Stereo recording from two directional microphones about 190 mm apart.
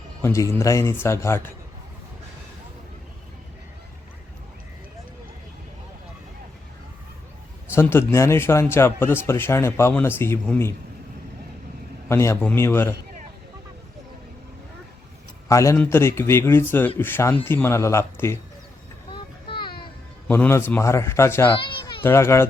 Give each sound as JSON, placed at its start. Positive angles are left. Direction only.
{"t": 0.2, "sound": "speech", "side_deg": 15}
{"t": 7.7, "sound": "speech", "side_deg": 10}
{"t": 12.0, "sound": "speech", "side_deg": 15}
{"t": 15.4, "sound": "speech", "side_deg": 15}
{"t": 19.1, "sound": "a sound", "side_deg": 25}
{"t": 20.2, "sound": "speech", "side_deg": 10}
{"t": 21.6, "sound": "a sound", "side_deg": 25}
{"t": 22.0, "sound": "speech", "side_deg": 15}